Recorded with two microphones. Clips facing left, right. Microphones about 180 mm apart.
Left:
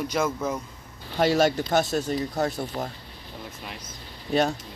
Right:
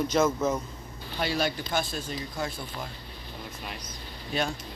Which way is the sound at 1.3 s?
45° left (ahead or behind).